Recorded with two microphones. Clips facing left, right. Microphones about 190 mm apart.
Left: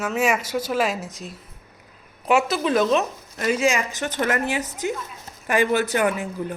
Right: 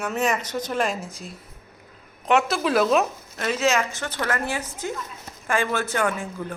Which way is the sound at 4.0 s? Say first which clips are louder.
Left 4 dB; 20° left (ahead or behind).